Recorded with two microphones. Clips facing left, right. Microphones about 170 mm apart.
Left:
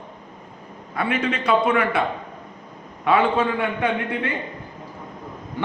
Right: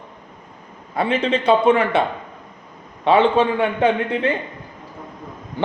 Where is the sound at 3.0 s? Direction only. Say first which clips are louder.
Right 4 dB; 25° right (ahead or behind).